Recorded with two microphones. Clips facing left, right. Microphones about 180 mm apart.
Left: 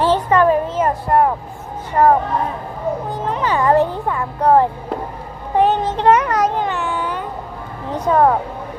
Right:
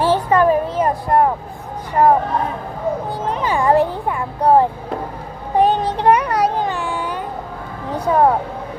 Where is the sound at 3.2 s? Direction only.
15° right (ahead or behind).